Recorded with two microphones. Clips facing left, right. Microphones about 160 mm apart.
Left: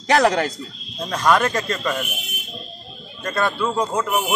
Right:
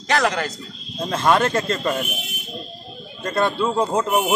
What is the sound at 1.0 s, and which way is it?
Speech, 25° right (ahead or behind).